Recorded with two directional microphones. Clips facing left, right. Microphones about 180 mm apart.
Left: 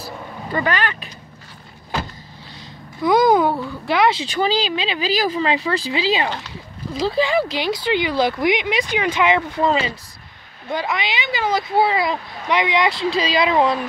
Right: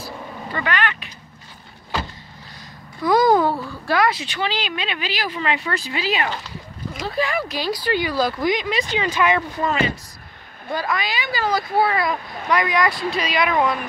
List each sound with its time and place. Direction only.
0.6 s speech: 35° left (ahead or behind)
3.0 s a sound: 20° left (ahead or behind)
4.4 s speech: 35° left (ahead or behind)